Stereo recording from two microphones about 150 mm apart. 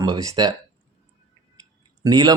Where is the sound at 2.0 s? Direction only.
25° right (ahead or behind).